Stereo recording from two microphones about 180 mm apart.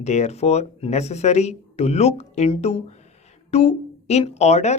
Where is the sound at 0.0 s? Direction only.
40° left (ahead or behind).